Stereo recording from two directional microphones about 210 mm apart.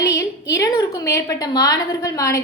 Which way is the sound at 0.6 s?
15° left (ahead or behind).